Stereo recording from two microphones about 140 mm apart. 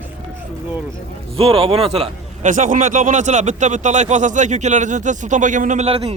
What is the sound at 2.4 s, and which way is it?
Speech, 65° right (ahead or behind).